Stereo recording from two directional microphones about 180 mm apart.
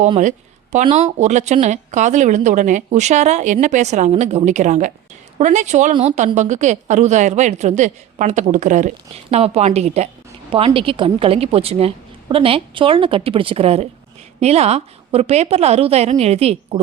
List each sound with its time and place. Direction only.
0.2 s a woman's voice: 40° right (ahead or behind)